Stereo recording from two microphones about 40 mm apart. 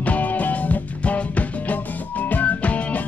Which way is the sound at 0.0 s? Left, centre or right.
Left.